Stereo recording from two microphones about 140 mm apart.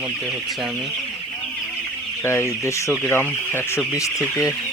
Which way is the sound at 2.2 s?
20° left (ahead or behind).